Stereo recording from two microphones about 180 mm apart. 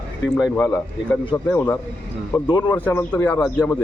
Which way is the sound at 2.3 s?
25° left (ahead or behind).